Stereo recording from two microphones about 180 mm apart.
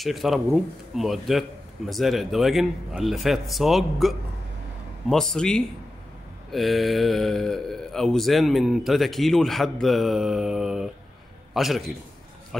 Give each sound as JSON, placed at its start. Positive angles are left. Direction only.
{"t": 0.0, "sound": "speech", "side_deg": 0}
{"t": 5.1, "sound": "speech", "side_deg": 5}